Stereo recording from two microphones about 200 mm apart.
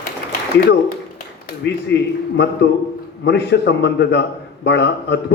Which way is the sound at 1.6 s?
60° left (ahead or behind).